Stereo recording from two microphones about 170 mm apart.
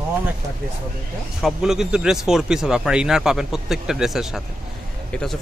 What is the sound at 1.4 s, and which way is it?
Speech, 5° right (ahead or behind).